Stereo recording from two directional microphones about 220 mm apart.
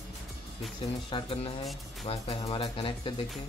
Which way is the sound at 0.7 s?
25° left (ahead or behind).